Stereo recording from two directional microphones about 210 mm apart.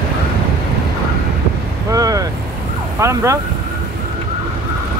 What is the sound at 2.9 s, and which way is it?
Speech, 15° right (ahead or behind).